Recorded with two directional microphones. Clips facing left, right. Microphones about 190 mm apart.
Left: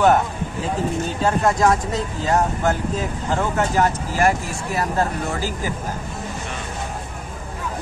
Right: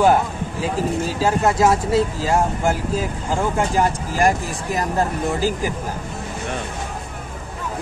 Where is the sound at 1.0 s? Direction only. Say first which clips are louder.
Even; 5° right (ahead or behind).